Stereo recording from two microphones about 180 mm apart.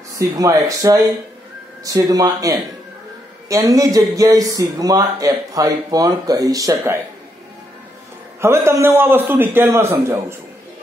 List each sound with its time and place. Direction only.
0.4 s a man's voice: 20° right (ahead or behind)
8.4 s a man's voice: 15° right (ahead or behind)